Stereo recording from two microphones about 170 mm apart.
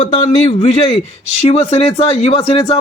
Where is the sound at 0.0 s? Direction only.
40° left (ahead or behind).